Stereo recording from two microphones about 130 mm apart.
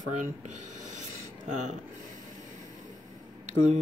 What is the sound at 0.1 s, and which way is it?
Speech, 70° right (ahead or behind).